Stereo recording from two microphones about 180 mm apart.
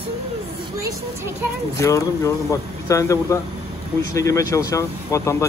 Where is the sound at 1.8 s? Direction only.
15° left (ahead or behind).